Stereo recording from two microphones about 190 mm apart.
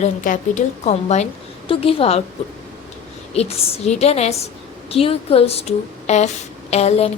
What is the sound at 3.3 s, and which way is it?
A woman's voice, 35° left (ahead or behind).